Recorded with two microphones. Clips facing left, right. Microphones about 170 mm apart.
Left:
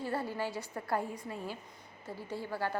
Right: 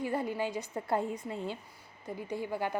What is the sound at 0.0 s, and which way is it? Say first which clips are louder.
A woman's voice: right 3 dB; 15° right (ahead or behind).